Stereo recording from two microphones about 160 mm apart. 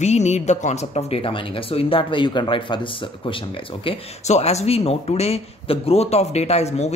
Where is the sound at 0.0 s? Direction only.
45° left (ahead or behind).